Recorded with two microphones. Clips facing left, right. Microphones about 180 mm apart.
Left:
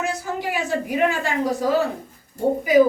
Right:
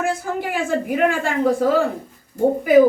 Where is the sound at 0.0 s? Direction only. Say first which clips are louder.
Right 3 dB; 55° right (ahead or behind).